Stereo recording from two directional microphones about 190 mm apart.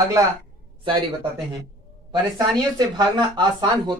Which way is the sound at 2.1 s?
20° right (ahead or behind).